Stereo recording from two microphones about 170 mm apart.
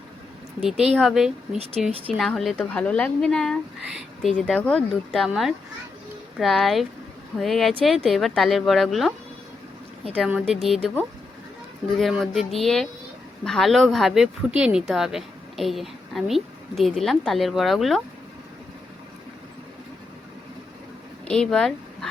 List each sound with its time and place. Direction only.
0.9 s speech: centre (ahead or behind)
1.5 s speech: 35° right (ahead or behind)
2.0 s speech: 5° left (ahead or behind)
10.2 s speech: 5° right (ahead or behind)
11.9 s speech: centre (ahead or behind)
21.2 s speech: 5° left (ahead or behind)